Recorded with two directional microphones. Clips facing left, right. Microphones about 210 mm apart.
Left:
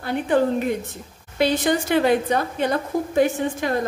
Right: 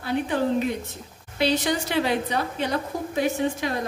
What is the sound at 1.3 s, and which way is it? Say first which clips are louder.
A woman's voice: left 3 dB; 50° left (ahead or behind).